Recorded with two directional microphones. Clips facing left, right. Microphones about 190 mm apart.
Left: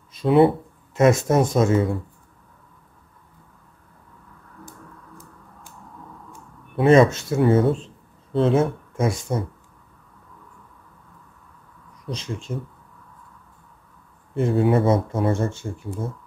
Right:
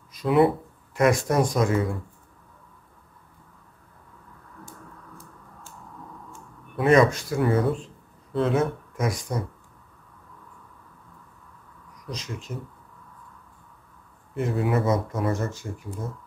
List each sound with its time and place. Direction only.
0.1 s speech: 25° left (ahead or behind)
6.8 s speech: 25° left (ahead or behind)
12.1 s speech: 30° left (ahead or behind)
14.3 s speech: 30° left (ahead or behind)